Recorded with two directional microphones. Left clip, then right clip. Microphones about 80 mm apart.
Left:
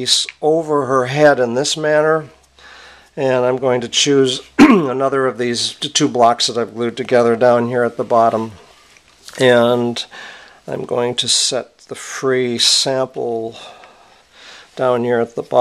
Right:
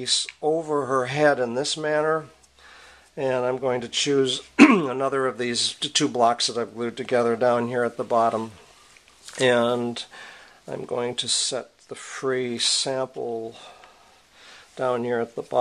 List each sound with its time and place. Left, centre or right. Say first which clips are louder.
0.0 s speech: left 9 dB; left
4.4 s speech: left 5 dB; left
9.4 s speech: left 9 dB; left
14.4 s a sound: left 9 dB; left